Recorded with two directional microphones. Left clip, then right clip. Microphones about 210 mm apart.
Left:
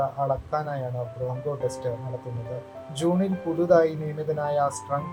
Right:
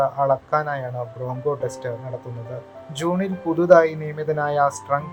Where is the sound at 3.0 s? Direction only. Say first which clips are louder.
Right 2 dB; 20° right (ahead or behind).